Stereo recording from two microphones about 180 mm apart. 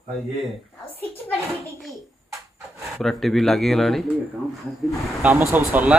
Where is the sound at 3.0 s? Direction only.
Centre (ahead or behind).